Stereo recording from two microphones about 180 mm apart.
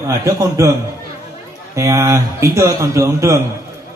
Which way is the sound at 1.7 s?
15° right (ahead or behind).